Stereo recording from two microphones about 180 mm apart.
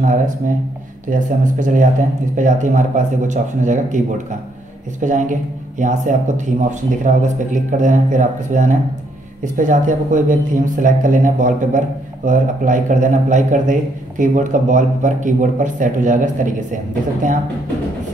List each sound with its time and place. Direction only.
0.0 s a man's voice: 45° right (ahead or behind)
5.0 s a man's voice: 45° right (ahead or behind)